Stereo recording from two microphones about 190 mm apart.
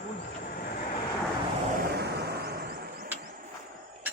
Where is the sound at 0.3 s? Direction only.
50° left (ahead or behind).